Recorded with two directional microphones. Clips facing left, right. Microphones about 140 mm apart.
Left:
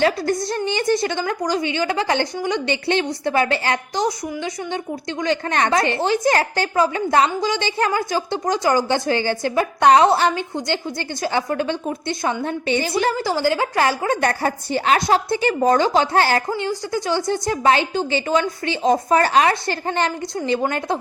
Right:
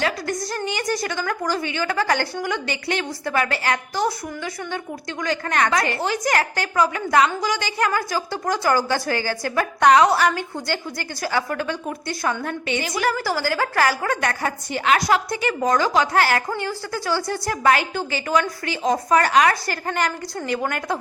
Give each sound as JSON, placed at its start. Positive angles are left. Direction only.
{"t": 0.0, "sound": "a woman's voice", "side_deg": 30}